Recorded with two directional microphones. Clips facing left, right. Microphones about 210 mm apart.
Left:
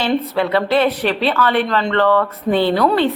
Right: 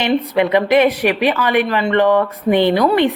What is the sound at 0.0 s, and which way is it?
A woman's voice, 15° right (ahead or behind).